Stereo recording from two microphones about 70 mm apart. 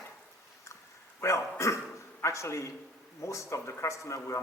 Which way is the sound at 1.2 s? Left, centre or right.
Left.